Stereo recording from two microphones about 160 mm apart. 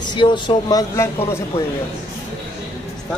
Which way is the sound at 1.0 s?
15° left (ahead or behind).